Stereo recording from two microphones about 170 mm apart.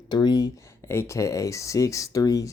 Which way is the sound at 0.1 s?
25° left (ahead or behind).